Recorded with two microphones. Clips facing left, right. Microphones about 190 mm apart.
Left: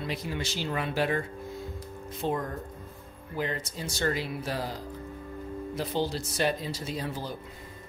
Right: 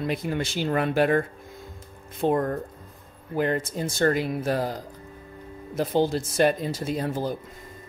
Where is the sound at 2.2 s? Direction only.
55° right (ahead or behind).